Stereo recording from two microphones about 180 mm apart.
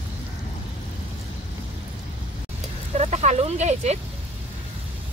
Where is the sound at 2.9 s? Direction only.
40° right (ahead or behind).